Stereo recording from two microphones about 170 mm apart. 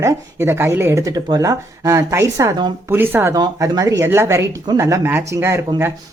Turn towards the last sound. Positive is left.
turn(degrees=-15)  # may be behind; listen again after turning